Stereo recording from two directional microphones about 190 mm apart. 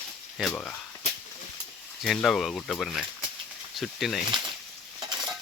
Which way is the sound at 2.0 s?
Centre (ahead or behind).